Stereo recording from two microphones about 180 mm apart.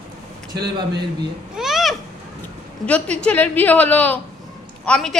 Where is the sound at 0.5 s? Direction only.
65° right (ahead or behind).